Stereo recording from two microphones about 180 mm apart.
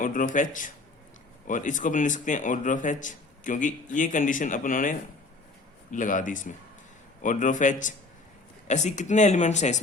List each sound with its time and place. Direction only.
0.0 s a man's voice: 45° left (ahead or behind)